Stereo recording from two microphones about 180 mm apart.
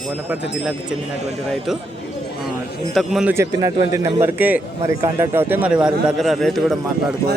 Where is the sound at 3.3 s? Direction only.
15° right (ahead or behind).